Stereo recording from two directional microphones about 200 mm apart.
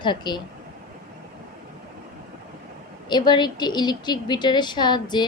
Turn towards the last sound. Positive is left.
turn(degrees=20)  # may be behind; listen again after turning